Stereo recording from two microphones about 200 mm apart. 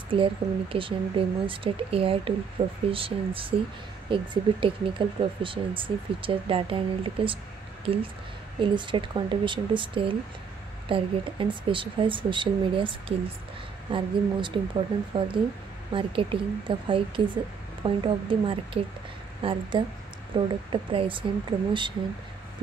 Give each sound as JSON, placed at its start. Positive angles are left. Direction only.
{"t": 0.1, "sound": "speech", "side_deg": -25}
{"t": 13.9, "sound": "speech", "side_deg": -25}